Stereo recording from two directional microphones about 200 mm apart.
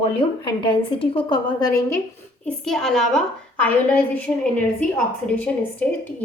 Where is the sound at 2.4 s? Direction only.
Centre (ahead or behind).